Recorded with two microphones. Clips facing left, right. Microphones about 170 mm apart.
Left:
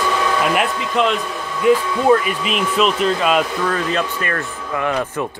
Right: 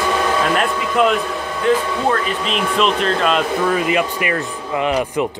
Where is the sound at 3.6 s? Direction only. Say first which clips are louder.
Right 3 dB; 10° right (ahead or behind).